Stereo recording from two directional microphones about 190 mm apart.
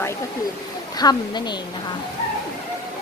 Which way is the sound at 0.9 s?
20° left (ahead or behind).